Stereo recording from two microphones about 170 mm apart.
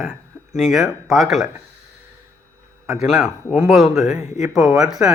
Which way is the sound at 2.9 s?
Centre (ahead or behind).